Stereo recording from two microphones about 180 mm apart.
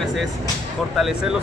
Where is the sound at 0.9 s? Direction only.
Centre (ahead or behind).